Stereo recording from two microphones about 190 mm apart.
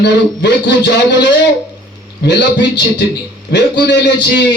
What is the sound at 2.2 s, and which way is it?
A man's voice, 65° left (ahead or behind).